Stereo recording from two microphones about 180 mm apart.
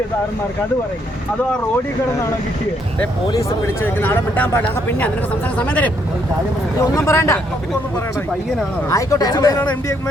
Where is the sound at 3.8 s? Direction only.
10° left (ahead or behind).